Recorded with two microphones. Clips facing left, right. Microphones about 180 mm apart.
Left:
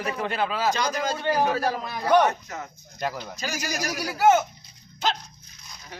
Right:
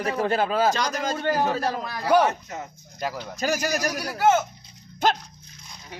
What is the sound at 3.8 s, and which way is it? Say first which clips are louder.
Speech: even; 10° left (ahead or behind).